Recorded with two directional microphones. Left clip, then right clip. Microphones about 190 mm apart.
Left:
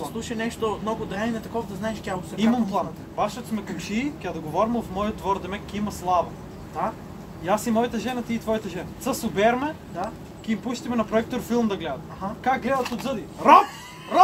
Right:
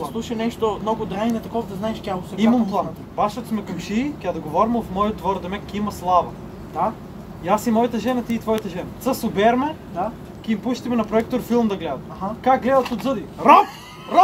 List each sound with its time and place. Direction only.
0.0 s speech: 10° right (ahead or behind)
2.3 s speech: 10° left (ahead or behind)
7.4 s speech: 10° left (ahead or behind)